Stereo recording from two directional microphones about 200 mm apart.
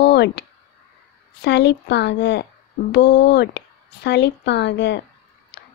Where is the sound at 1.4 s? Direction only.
60° left (ahead or behind).